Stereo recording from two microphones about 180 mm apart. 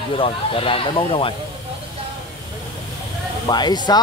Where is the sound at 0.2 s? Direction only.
30° left (ahead or behind).